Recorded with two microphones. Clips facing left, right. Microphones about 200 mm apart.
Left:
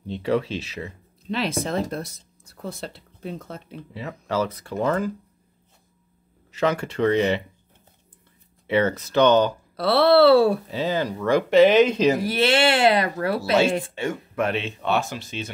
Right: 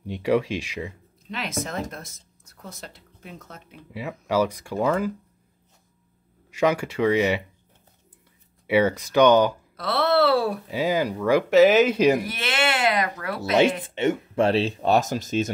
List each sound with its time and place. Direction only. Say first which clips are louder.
0.0 s speech: right 1 dB; 10° right (ahead or behind)
1.2 s speech: left 5 dB; 30° left (ahead or behind)
3.9 s speech: right 2 dB; 10° right (ahead or behind)
6.5 s speech: right 1 dB; 10° right (ahead or behind)
8.6 s speech: right 1 dB; 10° right (ahead or behind)
9.8 s speech: left 5 dB; 30° left (ahead or behind)
10.7 s speech: right 1 dB; 10° right (ahead or behind)
12.2 s speech: left 7 dB; 30° left (ahead or behind)
13.4 s speech: right 2 dB; 20° right (ahead or behind); by 15.5 s 40° right (ahead or behind)